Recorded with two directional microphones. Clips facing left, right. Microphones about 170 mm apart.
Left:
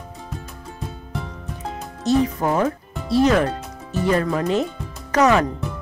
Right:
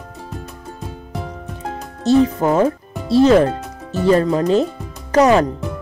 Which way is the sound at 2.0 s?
30° right (ahead or behind).